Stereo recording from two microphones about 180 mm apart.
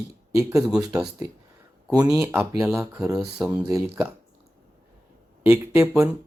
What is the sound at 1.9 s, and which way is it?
Speech, 5° right (ahead or behind).